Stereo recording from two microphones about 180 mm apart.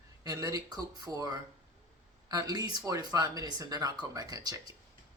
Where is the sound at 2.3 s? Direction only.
20° right (ahead or behind).